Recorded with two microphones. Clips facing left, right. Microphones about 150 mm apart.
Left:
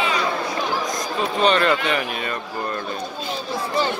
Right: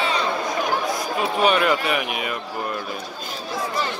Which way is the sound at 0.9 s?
10° right (ahead or behind).